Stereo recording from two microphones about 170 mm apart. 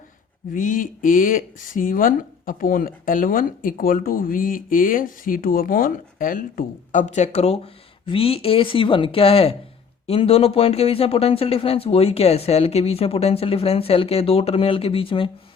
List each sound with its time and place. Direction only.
0.5 s speech: 50° left (ahead or behind); by 15.3 s 30° left (ahead or behind)